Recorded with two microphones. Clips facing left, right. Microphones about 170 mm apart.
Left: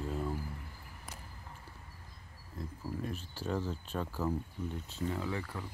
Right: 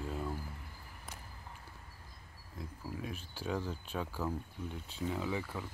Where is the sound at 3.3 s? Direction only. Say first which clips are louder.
Left 1 dB; 10° right (ahead or behind).